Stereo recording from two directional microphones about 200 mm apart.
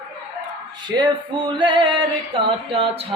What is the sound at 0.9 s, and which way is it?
Music, 20° right (ahead or behind).